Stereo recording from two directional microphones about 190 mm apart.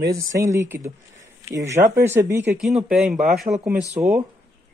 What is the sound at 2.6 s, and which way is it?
Speech, 5° right (ahead or behind).